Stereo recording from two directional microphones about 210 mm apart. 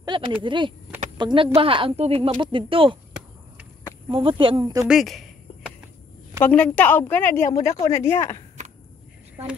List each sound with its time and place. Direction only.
0.4 s speech: 25° right (ahead or behind)
4.1 s speech: 25° right (ahead or behind)
4.8 s speech: centre (ahead or behind)
6.4 s a woman's voice: 5° left (ahead or behind)